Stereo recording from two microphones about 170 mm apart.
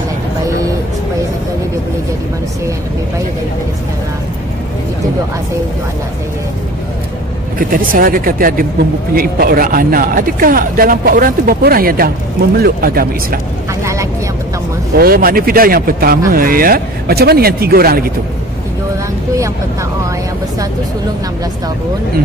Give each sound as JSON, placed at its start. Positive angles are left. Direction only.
{"t": 7.5, "sound": "speech", "side_deg": -55}
{"t": 15.0, "sound": "speech", "side_deg": -60}